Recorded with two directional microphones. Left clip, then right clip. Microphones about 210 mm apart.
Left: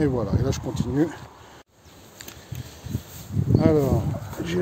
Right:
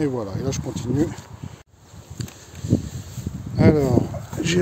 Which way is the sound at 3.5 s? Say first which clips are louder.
Right 2 dB; 25° right (ahead or behind).